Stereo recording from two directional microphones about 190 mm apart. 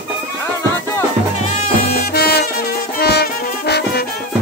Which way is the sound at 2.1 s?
55° left (ahead or behind).